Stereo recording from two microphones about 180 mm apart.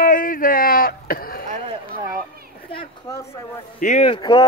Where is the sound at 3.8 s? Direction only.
40° left (ahead or behind).